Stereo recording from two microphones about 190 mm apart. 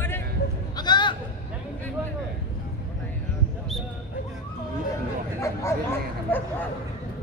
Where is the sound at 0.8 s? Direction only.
25° left (ahead or behind).